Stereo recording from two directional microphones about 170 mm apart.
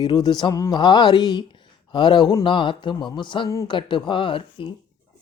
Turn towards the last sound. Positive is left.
turn(degrees=30)  # may be behind; listen again after turning